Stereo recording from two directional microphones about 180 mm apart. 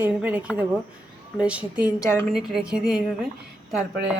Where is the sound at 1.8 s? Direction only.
15° left (ahead or behind).